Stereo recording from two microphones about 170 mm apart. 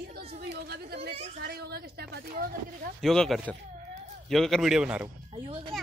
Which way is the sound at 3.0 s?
Centre (ahead or behind).